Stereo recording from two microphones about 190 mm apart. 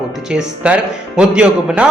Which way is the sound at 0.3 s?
5° right (ahead or behind).